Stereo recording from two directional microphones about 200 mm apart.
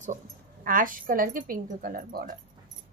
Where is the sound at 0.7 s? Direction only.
45° right (ahead or behind).